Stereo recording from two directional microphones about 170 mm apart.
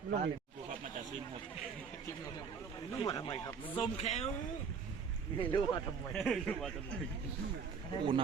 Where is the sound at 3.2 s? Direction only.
25° left (ahead or behind).